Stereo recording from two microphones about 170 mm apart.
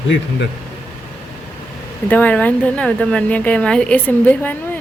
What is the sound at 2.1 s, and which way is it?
Speech, 10° left (ahead or behind).